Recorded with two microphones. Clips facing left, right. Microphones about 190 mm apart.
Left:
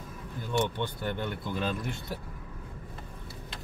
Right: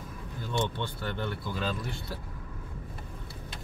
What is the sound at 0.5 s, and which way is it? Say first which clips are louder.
Speech: left 2 dB; 15° left (ahead or behind).